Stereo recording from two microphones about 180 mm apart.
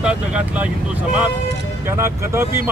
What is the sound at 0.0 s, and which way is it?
Speech, 5° right (ahead or behind).